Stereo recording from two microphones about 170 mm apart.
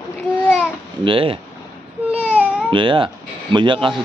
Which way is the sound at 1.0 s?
30° right (ahead or behind).